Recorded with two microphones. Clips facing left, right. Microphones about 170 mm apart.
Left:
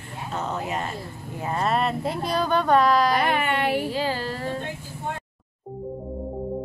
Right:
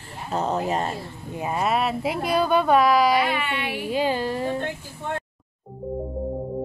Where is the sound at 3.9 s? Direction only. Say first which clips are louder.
Right 3 dB; 20° right (ahead or behind).